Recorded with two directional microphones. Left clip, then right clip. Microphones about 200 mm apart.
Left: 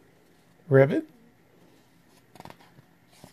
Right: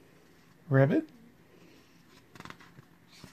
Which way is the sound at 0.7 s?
40° left (ahead or behind).